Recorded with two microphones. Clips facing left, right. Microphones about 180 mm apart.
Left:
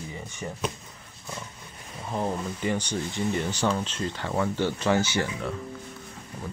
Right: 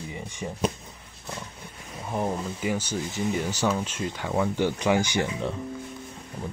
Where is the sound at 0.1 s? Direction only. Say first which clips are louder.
Right 2 dB; 15° right (ahead or behind).